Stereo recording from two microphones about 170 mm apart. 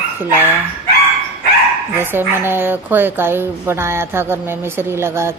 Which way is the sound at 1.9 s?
10° right (ahead or behind).